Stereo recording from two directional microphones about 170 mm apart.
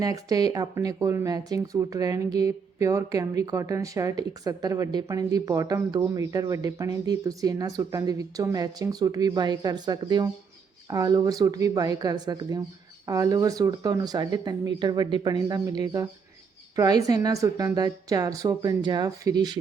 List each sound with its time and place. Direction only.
0.0 s speech: 20° right (ahead or behind)